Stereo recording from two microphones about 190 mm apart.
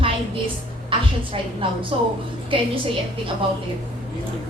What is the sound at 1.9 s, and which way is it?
Speech, 25° right (ahead or behind).